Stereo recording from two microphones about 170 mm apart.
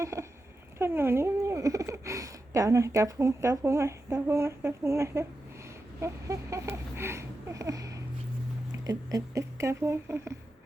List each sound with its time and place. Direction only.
0.0 s speech: 15° right (ahead or behind)
6.0 s a sound: 15° right (ahead or behind)
8.9 s speech: 20° right (ahead or behind)